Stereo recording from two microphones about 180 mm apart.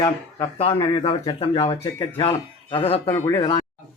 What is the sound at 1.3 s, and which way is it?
Speech, 35° left (ahead or behind).